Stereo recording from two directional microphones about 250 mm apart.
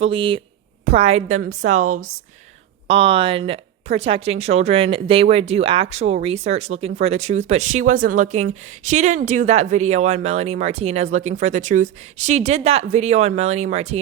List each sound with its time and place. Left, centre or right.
0.0 s speech: right